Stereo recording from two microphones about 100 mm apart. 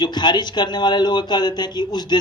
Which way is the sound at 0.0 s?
45° left (ahead or behind).